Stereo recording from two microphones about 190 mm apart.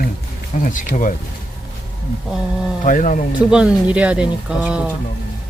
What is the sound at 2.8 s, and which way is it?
Speech, 40° left (ahead or behind).